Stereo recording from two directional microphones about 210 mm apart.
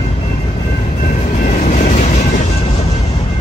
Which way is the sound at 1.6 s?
35° left (ahead or behind).